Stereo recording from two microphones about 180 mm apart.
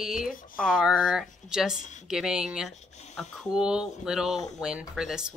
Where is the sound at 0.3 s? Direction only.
50° left (ahead or behind).